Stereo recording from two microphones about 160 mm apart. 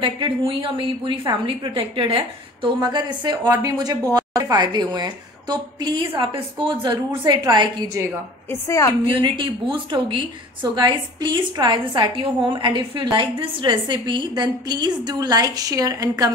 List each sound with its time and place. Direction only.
0.0 s a woman's voice: 30° right (ahead or behind)
8.5 s a woman's voice: 20° left (ahead or behind)
9.0 s a woman's voice: 30° right (ahead or behind)